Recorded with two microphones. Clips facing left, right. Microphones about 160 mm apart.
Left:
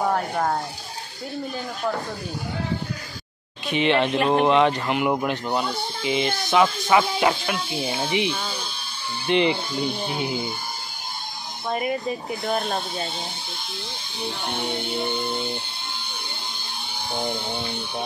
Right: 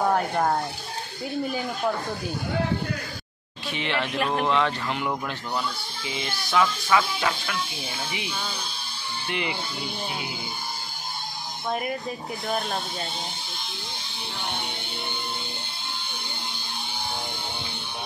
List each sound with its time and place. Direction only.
0.0 s speech: centre (ahead or behind)
3.6 s speech: 20° left (ahead or behind)
11.7 s speech: 5° left (ahead or behind)